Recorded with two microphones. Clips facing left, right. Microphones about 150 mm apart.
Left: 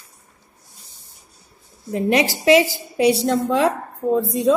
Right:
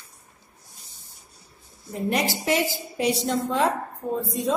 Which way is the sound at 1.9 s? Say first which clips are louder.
Left 6 dB; 90° left.